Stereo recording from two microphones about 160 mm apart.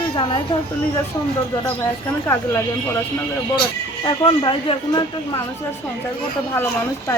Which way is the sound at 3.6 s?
30° left (ahead or behind).